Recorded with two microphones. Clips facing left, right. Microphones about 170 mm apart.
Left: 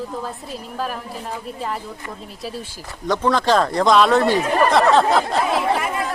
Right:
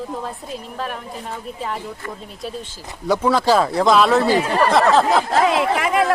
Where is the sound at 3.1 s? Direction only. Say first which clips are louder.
Right 1 dB; 10° right (ahead or behind).